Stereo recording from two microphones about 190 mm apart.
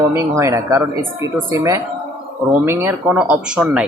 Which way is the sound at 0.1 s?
15° right (ahead or behind).